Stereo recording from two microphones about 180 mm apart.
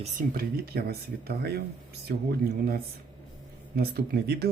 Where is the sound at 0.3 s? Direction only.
55° right (ahead or behind).